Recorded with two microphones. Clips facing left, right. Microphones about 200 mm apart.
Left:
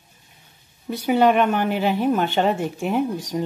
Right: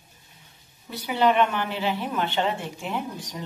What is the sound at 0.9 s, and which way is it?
A woman's voice, 45° left (ahead or behind).